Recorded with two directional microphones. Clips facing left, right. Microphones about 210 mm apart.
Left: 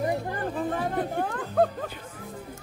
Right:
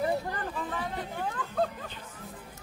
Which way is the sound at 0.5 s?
45° left (ahead or behind).